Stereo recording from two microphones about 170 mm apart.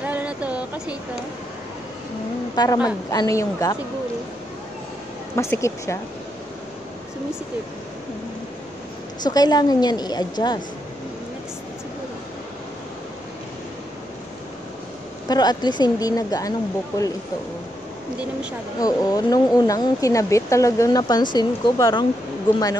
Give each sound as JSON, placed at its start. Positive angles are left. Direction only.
{"t": 0.0, "sound": "a sound", "side_deg": -10}
{"t": 2.5, "sound": "speech", "side_deg": 25}
{"t": 5.3, "sound": "speech", "side_deg": 15}
{"t": 9.2, "sound": "speech", "side_deg": 25}
{"t": 15.2, "sound": "speech", "side_deg": 25}
{"t": 18.8, "sound": "speech", "side_deg": 20}